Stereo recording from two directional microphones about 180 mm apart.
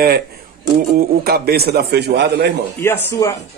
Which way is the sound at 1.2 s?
60° right (ahead or behind).